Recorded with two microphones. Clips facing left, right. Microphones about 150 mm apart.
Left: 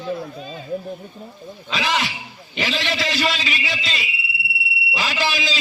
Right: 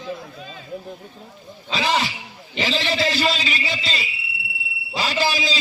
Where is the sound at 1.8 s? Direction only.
35° right (ahead or behind).